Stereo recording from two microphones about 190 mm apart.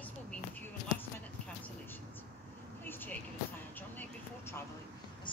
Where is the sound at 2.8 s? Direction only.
10° left (ahead or behind).